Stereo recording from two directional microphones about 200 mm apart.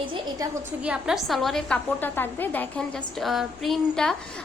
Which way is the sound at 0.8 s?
5° right (ahead or behind).